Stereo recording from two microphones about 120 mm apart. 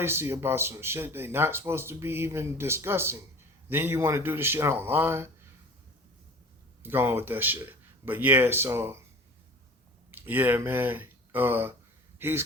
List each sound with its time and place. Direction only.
0.0 s speech: 20° right (ahead or behind)
6.8 s speech: 20° right (ahead or behind)
10.1 s speech: 15° right (ahead or behind)